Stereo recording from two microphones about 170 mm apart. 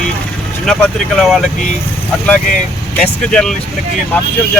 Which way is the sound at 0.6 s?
Centre (ahead or behind).